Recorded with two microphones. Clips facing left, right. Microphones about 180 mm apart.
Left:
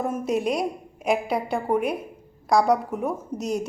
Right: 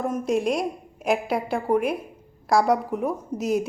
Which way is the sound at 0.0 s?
5° left (ahead or behind).